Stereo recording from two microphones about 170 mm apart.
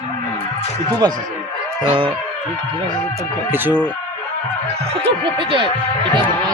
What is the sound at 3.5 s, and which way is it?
Speech, 10° right (ahead or behind).